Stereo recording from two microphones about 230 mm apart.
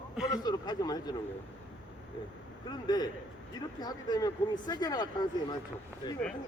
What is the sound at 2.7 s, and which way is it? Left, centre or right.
Speech, centre.